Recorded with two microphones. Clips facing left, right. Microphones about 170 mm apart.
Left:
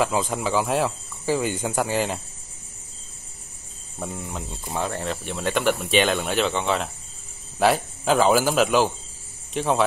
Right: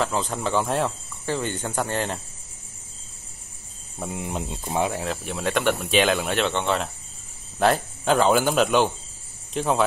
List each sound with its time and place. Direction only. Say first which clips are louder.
0.0 s speech: left 2 dB; 10° left (ahead or behind)
4.0 s speech: right 2 dB; 10° right (ahead or behind)
4.9 s speech: even; centre (ahead or behind)